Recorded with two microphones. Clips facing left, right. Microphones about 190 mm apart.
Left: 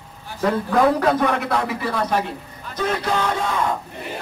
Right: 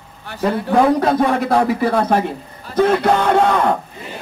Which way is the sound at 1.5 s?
45° right (ahead or behind).